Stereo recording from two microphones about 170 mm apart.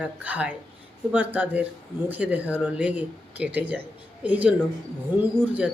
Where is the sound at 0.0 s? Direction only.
10° right (ahead or behind).